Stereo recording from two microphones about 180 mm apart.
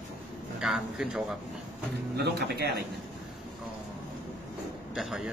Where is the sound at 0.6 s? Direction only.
Centre (ahead or behind).